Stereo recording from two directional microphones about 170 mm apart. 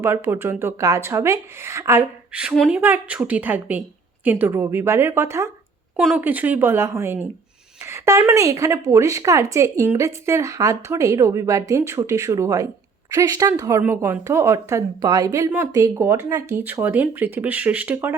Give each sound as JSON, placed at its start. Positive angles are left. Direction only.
{"t": 0.0, "sound": "a woman's voice", "side_deg": -15}
{"t": 2.4, "sound": "a woman's voice", "side_deg": -5}
{"t": 6.0, "sound": "a woman's voice", "side_deg": -5}